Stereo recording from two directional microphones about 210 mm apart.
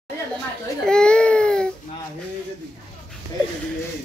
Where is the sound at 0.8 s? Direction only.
5° left (ahead or behind).